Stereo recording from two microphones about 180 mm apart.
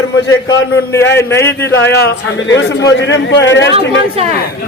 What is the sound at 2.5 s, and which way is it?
A man's voice, 85° left.